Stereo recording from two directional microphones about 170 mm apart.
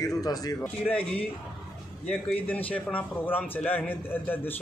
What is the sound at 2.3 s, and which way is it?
A man's voice, 10° left (ahead or behind).